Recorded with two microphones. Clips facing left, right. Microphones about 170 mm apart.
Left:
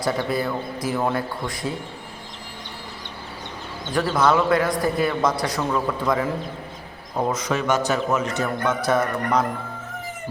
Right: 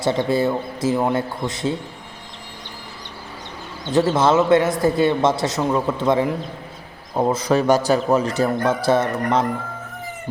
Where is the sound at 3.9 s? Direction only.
25° right (ahead or behind).